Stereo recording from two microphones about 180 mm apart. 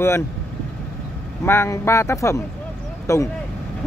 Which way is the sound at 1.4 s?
15° left (ahead or behind).